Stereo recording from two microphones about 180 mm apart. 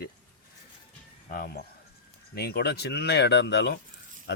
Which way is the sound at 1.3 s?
55° left (ahead or behind).